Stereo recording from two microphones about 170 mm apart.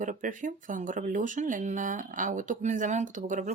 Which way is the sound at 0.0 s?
50° right (ahead or behind).